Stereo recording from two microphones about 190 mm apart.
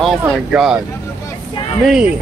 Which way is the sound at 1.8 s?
5° right (ahead or behind).